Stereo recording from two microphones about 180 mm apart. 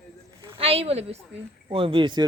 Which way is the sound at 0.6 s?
35° right (ahead or behind).